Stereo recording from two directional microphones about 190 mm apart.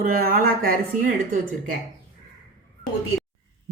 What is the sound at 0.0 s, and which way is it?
Speech, 50° right (ahead or behind).